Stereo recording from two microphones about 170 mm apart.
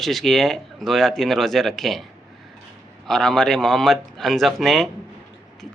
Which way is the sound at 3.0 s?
Centre (ahead or behind).